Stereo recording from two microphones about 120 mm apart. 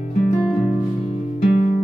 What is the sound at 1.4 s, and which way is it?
Music, 60° left (ahead or behind).